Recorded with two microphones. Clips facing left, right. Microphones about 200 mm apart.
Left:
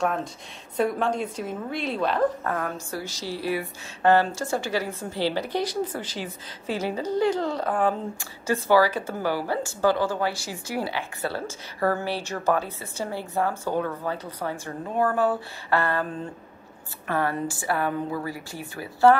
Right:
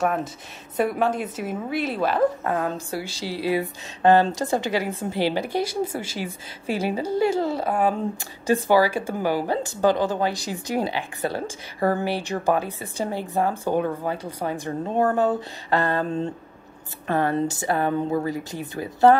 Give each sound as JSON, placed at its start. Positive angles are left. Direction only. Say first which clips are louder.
{"t": 0.0, "sound": "a woman's voice", "louder": "right 2 dB", "side_deg": -5}
{"t": 2.4, "sound": "a woman's voice", "louder": "right 4 dB", "side_deg": -15}